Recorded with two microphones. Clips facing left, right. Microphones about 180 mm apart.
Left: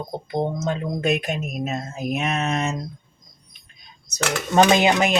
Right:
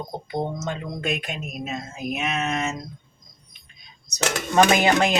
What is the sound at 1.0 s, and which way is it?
Mantra, 45° left (ahead or behind).